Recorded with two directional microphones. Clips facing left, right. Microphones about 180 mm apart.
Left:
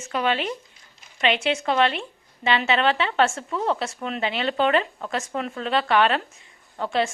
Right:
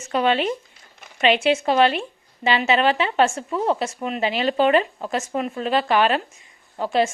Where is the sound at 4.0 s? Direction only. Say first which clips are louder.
Right 3 dB; 10° right (ahead or behind).